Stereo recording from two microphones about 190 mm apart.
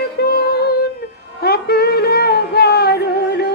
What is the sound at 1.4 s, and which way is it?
Music, 55° left (ahead or behind).